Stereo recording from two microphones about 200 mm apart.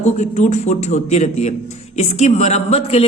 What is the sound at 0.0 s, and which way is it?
A man's voice, 35° left (ahead or behind).